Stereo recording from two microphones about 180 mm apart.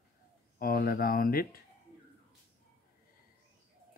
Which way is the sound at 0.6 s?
55° left (ahead or behind).